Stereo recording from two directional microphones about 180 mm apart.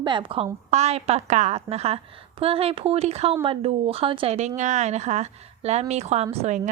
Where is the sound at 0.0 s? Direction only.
25° right (ahead or behind).